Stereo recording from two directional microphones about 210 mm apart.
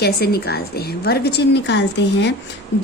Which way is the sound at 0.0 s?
50° left (ahead or behind).